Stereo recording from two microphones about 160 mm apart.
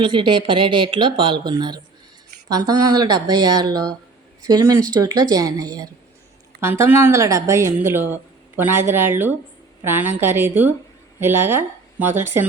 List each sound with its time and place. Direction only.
0.0 s speech: 30° right (ahead or behind); by 12.5 s 15° right (ahead or behind)